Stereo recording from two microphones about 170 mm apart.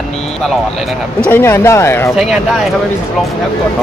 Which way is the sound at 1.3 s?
15° left (ahead or behind).